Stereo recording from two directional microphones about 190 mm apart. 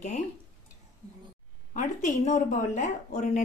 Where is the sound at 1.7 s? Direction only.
40° left (ahead or behind).